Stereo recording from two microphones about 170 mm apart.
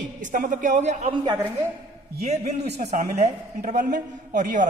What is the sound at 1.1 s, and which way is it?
Speech, 25° right (ahead or behind).